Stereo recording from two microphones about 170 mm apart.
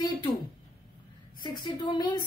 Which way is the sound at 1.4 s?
25° left (ahead or behind).